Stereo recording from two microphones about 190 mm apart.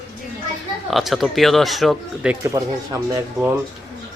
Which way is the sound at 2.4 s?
20° right (ahead or behind).